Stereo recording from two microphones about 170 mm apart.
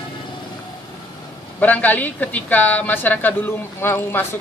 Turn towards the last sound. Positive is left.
turn(degrees=15)  # may be behind; listen again after turning